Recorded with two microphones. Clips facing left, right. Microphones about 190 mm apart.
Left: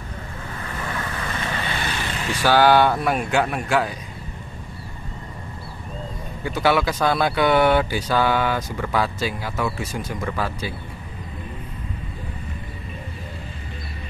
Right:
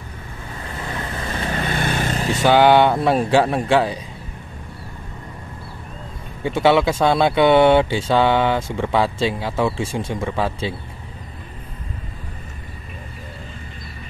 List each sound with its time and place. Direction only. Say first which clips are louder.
0.8 s vehicle: right 2 dB; 25° right (ahead or behind); by 2.3 s 40° right (ahead or behind)
2.3 s speech: right 3 dB; 20° right (ahead or behind)
6.4 s speech: right 4 dB; 25° right (ahead or behind)